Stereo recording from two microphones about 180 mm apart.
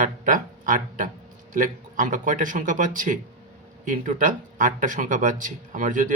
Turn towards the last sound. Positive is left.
turn(degrees=-45)  # may be behind; listen again after turning